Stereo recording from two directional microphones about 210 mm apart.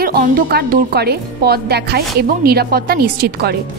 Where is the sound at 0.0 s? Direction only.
45° right (ahead or behind).